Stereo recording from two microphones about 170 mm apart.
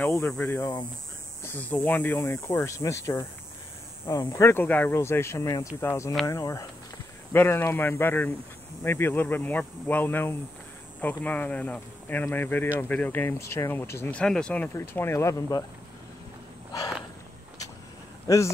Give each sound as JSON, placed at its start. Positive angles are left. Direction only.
{"t": 0.0, "sound": "speech", "side_deg": 15}
{"t": 14.2, "sound": "speech", "side_deg": 5}
{"t": 18.2, "sound": "speech", "side_deg": 15}